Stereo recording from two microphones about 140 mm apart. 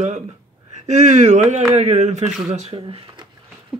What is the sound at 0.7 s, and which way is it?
Speech, 55° right (ahead or behind).